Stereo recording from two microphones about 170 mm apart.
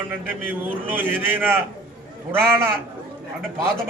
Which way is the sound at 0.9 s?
10° right (ahead or behind).